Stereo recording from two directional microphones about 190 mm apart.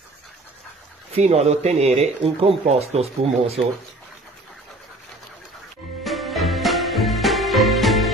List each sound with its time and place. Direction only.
1.1 s speech: 35° right (ahead or behind)
6.0 s music: centre (ahead or behind)